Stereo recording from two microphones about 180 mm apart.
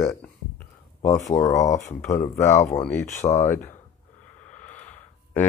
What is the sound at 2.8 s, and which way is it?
Speech, 10° left (ahead or behind).